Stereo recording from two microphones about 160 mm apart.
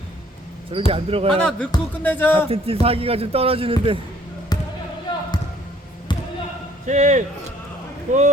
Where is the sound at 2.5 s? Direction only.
35° right (ahead or behind).